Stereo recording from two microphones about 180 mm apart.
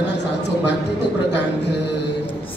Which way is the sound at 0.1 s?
70° left (ahead or behind).